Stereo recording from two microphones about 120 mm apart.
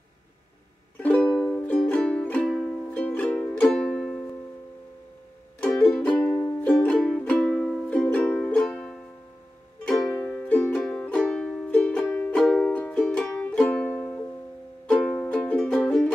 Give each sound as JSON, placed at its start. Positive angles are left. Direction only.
{"t": 0.9, "sound": "music", "side_deg": 10}
{"t": 5.8, "sound": "music", "side_deg": 10}
{"t": 7.5, "sound": "music", "side_deg": 0}